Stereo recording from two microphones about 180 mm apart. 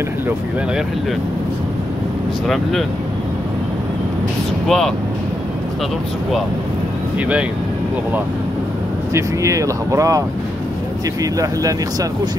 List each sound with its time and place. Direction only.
2.4 s speech: centre (ahead or behind)
4.6 s speech: 5° left (ahead or behind)
7.2 s speech: 5° right (ahead or behind)
9.1 s speech: 15° right (ahead or behind)
11.3 s speech: 20° right (ahead or behind)